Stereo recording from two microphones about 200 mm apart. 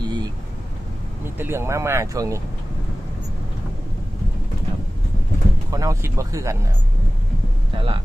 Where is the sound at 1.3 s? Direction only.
10° right (ahead or behind).